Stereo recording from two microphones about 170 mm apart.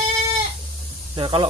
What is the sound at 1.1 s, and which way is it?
Speech, 30° right (ahead or behind).